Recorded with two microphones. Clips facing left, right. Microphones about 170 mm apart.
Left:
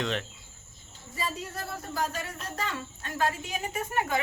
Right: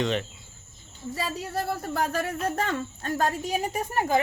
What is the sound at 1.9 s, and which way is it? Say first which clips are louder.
A woman's voice: right 2 dB; 60° right (ahead or behind).